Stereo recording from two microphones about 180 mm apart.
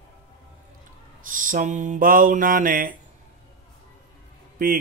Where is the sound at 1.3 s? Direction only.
45° right (ahead or behind).